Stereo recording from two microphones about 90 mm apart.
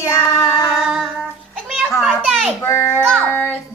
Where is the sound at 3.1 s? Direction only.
25° right (ahead or behind).